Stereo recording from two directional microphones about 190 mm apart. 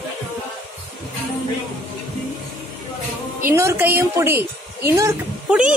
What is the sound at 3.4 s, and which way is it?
A woman's voice, 15° right (ahead or behind).